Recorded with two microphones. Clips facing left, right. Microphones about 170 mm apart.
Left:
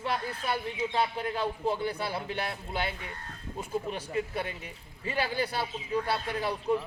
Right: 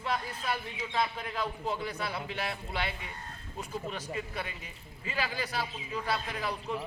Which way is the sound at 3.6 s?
30° left (ahead or behind).